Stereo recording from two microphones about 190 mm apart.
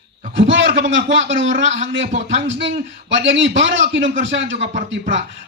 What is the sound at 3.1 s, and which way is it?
Speech, 70° right (ahead or behind).